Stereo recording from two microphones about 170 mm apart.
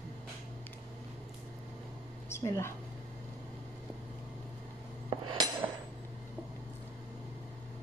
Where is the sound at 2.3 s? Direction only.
15° left (ahead or behind).